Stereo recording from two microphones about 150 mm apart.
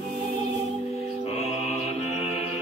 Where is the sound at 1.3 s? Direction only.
45° left (ahead or behind).